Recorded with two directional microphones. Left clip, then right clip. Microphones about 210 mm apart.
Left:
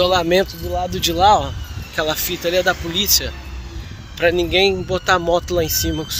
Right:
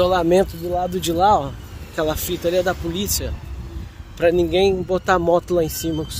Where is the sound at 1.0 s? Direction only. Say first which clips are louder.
Left 3 dB; 35° right (ahead or behind).